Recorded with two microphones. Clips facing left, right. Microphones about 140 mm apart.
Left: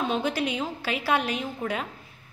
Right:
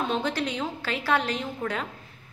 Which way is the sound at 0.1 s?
10° left (ahead or behind).